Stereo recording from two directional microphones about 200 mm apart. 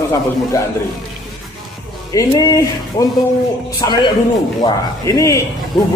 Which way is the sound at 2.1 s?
20° left (ahead or behind).